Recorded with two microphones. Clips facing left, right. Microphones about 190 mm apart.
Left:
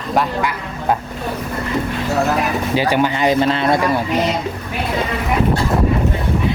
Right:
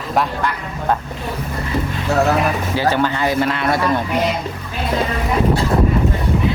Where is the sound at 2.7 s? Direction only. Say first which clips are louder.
Left 2 dB; 15° left (ahead or behind).